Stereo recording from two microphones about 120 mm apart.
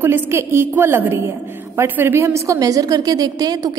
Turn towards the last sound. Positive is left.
turn(degrees=-30)  # may be behind; listen again after turning